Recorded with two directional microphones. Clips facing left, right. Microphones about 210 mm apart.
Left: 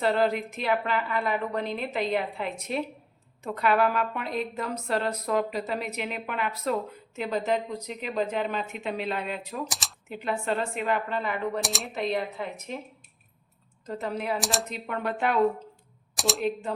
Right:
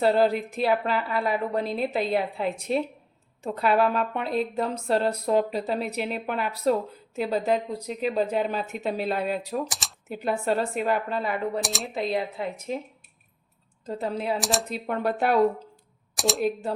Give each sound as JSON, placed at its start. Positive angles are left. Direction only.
{"t": 0.0, "sound": "a woman's voice", "side_deg": -35}
{"t": 9.6, "sound": "speech", "side_deg": 0}
{"t": 10.1, "sound": "a woman's voice", "side_deg": -40}
{"t": 11.6, "sound": "speech", "side_deg": 0}
{"t": 13.8, "sound": "speech", "side_deg": -30}
{"t": 14.3, "sound": "speech", "side_deg": 0}
{"t": 14.7, "sound": "a woman's voice", "side_deg": -35}
{"t": 16.1, "sound": "speech", "side_deg": 0}